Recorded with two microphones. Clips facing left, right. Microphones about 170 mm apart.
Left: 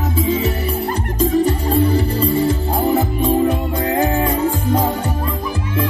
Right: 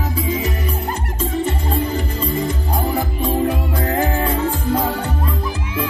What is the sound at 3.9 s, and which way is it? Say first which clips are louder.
Music: left 2 dB; 15° left (ahead or behind).